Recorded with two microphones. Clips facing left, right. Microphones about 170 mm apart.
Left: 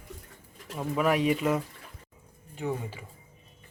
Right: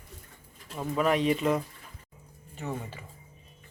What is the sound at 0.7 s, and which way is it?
Speech, 5° left (ahead or behind).